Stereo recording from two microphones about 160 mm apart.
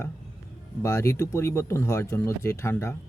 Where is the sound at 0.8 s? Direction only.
20° left (ahead or behind).